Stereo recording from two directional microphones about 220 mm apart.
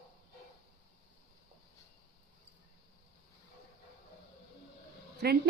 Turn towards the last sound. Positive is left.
turn(degrees=-45)  # may be behind; listen again after turning